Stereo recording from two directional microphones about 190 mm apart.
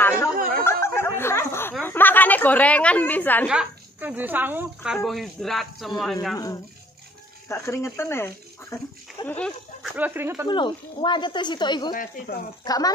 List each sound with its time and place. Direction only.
0.0 s a sound: 15° left (ahead or behind)
3.4 s speech: 5° right (ahead or behind)
6.3 s speech: 20° left (ahead or behind)
9.9 s speech: 10° right (ahead or behind)
10.5 s speech: 25° left (ahead or behind)
11.9 s speech: 50° left (ahead or behind)
12.6 s speech: 20° left (ahead or behind)